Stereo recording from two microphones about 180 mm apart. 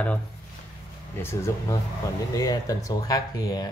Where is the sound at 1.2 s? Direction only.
15° left (ahead or behind).